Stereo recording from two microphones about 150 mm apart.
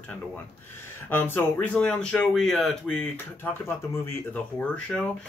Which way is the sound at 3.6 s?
15° left (ahead or behind).